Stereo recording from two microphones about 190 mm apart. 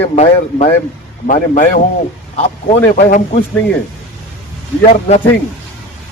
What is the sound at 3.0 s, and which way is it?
Speech, 40° left (ahead or behind).